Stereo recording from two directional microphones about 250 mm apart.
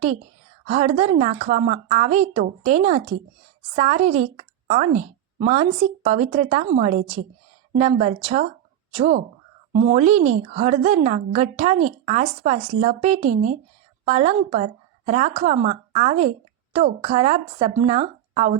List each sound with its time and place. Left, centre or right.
0.7 s a woman's voice: right